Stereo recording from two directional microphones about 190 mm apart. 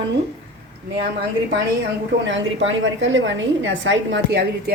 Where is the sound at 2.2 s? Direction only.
75° right (ahead or behind).